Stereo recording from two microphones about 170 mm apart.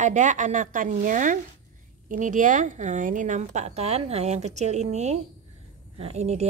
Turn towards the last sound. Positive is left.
turn(degrees=-40)  # may be behind; listen again after turning